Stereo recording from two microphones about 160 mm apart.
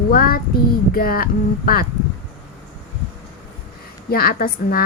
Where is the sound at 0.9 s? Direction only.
65° left (ahead or behind).